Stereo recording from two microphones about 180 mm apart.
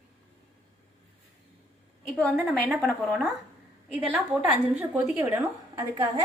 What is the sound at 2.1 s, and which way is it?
A woman's voice, 5° left (ahead or behind).